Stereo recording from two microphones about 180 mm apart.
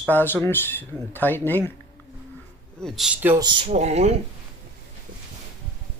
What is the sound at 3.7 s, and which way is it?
Speech, 40° right (ahead or behind).